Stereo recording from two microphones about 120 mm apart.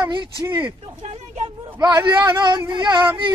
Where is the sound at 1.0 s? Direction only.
60° right (ahead or behind).